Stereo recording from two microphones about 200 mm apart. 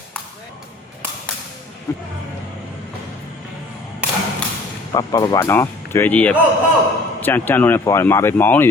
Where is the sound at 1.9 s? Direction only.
15° left (ahead or behind).